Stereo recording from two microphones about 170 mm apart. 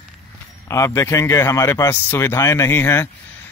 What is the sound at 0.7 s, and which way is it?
Speech, 15° left (ahead or behind).